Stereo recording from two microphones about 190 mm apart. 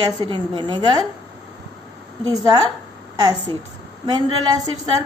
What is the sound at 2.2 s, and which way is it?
A woman's voice, 20° right (ahead or behind).